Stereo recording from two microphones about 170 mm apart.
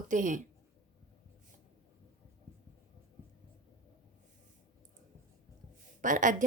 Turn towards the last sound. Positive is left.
turn(degrees=-50)  # may be behind; listen again after turning